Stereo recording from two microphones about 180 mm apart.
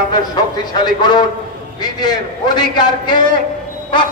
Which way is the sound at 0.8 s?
25° left (ahead or behind).